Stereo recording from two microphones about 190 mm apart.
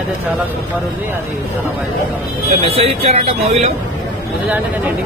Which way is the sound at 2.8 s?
30° right (ahead or behind).